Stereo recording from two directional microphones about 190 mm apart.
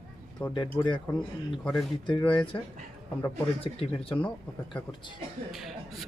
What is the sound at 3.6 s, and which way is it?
Speech, 30° left (ahead or behind).